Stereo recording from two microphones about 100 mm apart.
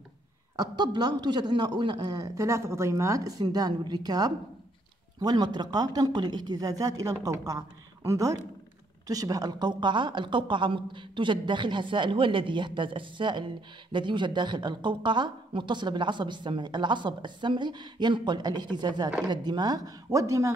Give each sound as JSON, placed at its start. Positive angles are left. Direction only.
{"t": 0.6, "sound": "a man's voice", "side_deg": -45}